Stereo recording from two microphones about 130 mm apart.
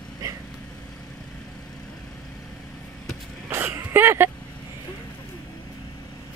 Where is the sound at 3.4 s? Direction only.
15° right (ahead or behind).